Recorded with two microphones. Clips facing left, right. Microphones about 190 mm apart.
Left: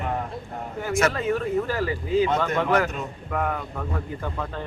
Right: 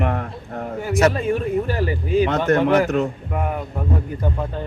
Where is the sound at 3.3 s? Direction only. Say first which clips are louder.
Right 2 dB; 15° right (ahead or behind).